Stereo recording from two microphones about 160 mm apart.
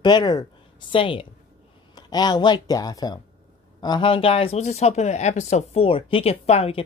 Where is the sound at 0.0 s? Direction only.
25° left (ahead or behind).